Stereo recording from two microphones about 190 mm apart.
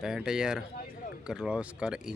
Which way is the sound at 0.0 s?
5° right (ahead or behind).